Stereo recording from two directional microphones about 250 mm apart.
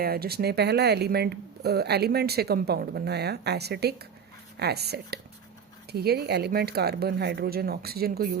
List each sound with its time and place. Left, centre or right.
0.0 s speech: right